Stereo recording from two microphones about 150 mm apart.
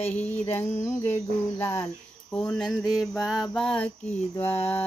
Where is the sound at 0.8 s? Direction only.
15° left (ahead or behind).